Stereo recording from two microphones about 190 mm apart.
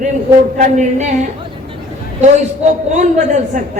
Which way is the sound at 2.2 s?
40° right (ahead or behind).